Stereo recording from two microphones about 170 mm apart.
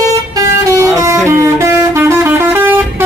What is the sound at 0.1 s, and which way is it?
Vehicle, 20° right (ahead or behind).